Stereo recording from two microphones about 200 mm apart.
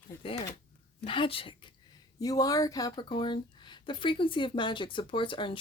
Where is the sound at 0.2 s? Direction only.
25° left (ahead or behind).